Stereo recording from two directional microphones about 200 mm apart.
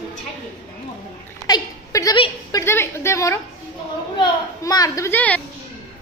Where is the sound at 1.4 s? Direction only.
20° left (ahead or behind).